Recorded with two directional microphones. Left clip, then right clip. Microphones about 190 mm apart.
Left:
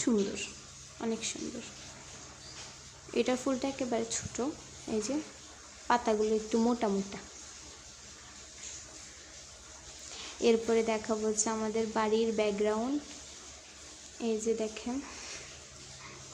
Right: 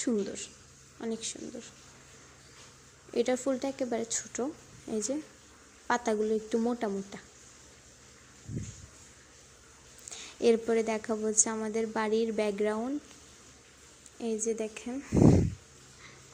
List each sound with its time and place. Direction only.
0.0 s a woman's voice: 15° right (ahead or behind)
3.2 s a woman's voice: 15° right (ahead or behind)
10.2 s a woman's voice: 20° right (ahead or behind)
14.2 s a woman's voice: 15° right (ahead or behind)